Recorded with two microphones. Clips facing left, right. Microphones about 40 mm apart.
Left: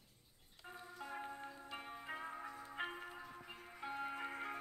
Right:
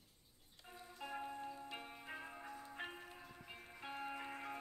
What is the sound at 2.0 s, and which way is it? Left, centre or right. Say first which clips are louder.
Music: left 5 dB; centre.